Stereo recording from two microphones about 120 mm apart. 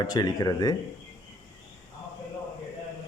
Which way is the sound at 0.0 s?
35° left (ahead or behind).